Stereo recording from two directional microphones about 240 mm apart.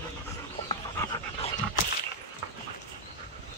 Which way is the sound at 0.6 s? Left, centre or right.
Centre.